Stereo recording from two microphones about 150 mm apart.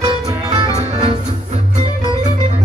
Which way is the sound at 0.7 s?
45° right (ahead or behind).